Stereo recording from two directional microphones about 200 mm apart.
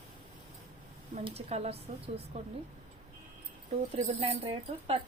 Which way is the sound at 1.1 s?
30° right (ahead or behind).